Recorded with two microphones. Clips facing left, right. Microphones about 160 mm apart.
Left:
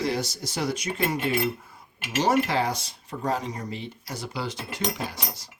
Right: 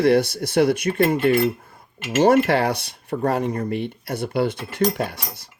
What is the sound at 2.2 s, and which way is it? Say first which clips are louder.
Speech: right 7 dB; 60° right (ahead or behind).